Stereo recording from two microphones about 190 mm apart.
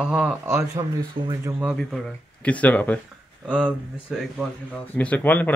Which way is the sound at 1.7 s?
5° left (ahead or behind).